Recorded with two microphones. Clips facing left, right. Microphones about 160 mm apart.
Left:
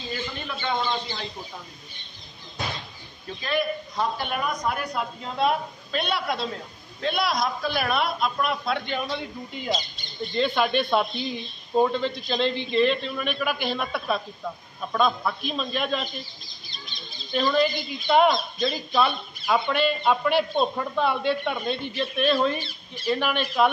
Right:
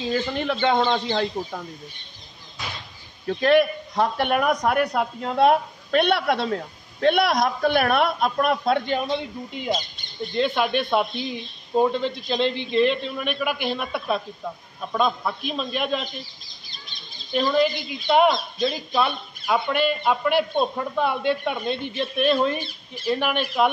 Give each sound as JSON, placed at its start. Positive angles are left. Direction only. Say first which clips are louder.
{"t": 0.1, "sound": "speech", "louder": "right 8 dB", "side_deg": -65}
{"t": 3.3, "sound": "speech", "louder": "right 9 dB", "side_deg": -65}
{"t": 10.3, "sound": "speech", "louder": "right 1 dB", "side_deg": -10}
{"t": 17.3, "sound": "speech", "louder": "right 2 dB", "side_deg": -10}